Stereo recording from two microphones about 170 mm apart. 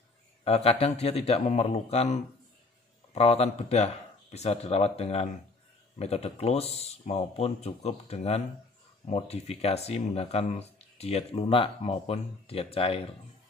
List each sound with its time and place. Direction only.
0.4 s speech: 35° left (ahead or behind)
3.2 s speech: 35° left (ahead or behind)